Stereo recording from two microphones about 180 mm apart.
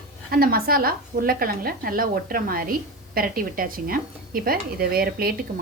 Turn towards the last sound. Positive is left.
turn(degrees=-55)  # may be behind; listen again after turning